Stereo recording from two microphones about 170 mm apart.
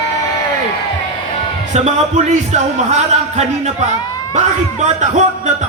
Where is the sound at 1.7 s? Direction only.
40° right (ahead or behind).